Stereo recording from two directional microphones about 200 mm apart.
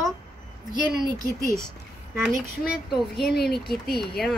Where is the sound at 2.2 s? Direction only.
Centre (ahead or behind).